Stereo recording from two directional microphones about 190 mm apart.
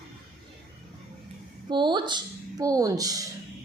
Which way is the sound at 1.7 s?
25° right (ahead or behind).